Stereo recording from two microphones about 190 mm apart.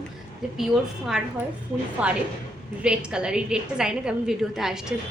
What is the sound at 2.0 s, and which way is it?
A woman's voice, 5° right (ahead or behind).